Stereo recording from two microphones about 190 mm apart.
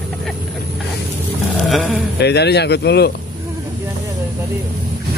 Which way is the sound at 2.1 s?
60° left (ahead or behind).